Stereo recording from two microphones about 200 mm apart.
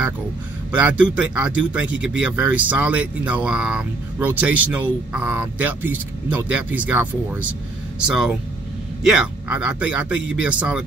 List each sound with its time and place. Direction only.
0.7 s speech: 5° right (ahead or behind)